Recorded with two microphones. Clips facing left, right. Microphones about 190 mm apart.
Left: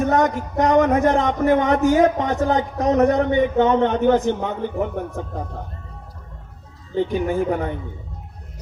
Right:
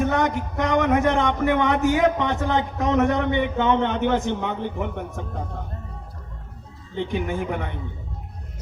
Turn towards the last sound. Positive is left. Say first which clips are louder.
# left 6 dB
turn(degrees=40)  # may be behind; listen again after turning